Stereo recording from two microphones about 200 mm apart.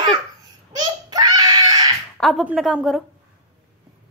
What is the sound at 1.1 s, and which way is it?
Screaming, 20° right (ahead or behind).